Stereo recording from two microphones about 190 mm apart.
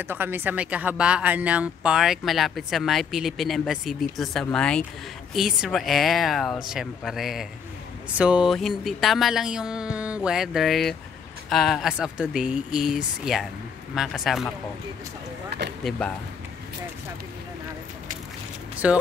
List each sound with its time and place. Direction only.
0.0 s speech: 10° right (ahead or behind)
15.5 s speech: 60° right (ahead or behind)
18.8 s speech: 5° right (ahead or behind)